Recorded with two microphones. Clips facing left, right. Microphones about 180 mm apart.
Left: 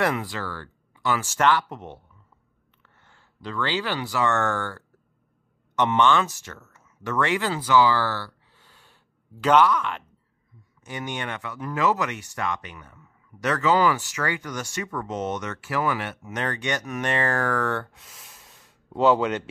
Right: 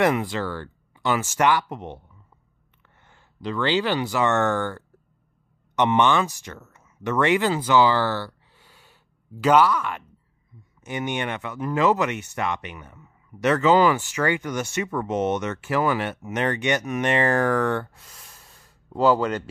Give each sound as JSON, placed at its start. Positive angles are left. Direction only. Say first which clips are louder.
{"t": 0.0, "sound": "speech", "louder": "right 4 dB", "side_deg": -20}
{"t": 8.5, "sound": "gasp", "louder": "right 2 dB", "side_deg": -10}
{"t": 10.8, "sound": "speech", "louder": "right 5 dB", "side_deg": -20}
{"t": 17.9, "sound": "a sound", "louder": "even", "side_deg": 0}